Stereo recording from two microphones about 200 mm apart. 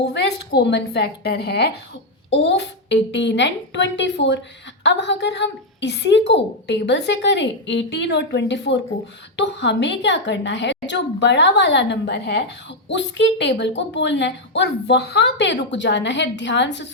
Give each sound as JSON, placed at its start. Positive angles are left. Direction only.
{"t": 0.0, "sound": "a woman's voice", "side_deg": 55}